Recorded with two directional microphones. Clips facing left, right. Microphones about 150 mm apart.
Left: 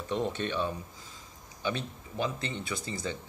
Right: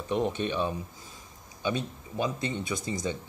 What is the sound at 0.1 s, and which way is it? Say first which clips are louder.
Speech: right 3 dB; 15° right (ahead or behind).